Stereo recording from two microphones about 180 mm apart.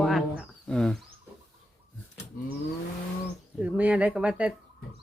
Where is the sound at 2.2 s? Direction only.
40° left (ahead or behind).